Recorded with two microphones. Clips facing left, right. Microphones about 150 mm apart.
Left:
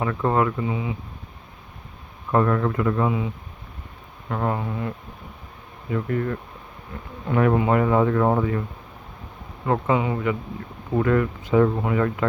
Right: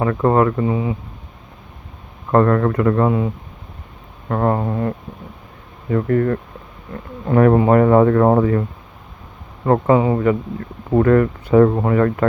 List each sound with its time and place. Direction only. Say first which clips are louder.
0.0 s speech: right 6 dB; 50° right (ahead or behind)
2.3 s speech: right 6 dB; 60° right (ahead or behind)
9.6 s speech: right 7 dB; 45° right (ahead or behind)